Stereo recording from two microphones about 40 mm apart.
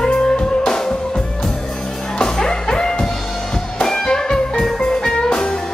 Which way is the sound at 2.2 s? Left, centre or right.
Centre.